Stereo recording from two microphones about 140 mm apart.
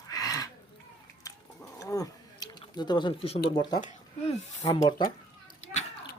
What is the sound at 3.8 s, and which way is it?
Speech, 55° left (ahead or behind).